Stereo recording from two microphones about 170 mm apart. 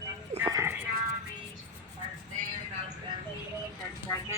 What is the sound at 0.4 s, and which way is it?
Music, 15° right (ahead or behind).